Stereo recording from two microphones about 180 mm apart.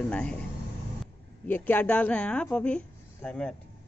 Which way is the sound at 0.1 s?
5° left (ahead or behind).